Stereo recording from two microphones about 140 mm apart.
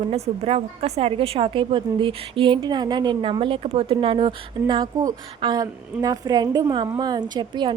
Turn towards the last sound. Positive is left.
turn(degrees=-30)  # may be behind; listen again after turning